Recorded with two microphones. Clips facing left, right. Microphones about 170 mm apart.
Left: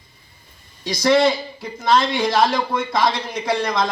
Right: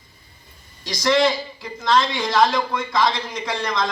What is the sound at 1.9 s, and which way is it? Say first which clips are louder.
A man's voice: left 2 dB; 55° left (ahead or behind).